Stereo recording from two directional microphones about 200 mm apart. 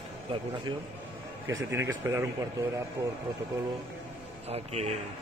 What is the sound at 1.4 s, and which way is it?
Speech, 15° right (ahead or behind).